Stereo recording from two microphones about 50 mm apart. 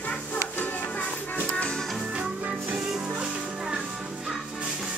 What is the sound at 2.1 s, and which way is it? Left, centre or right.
Music, right.